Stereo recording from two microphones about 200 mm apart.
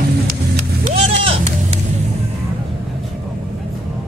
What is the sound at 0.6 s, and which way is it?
Vehicle, 35° right (ahead or behind).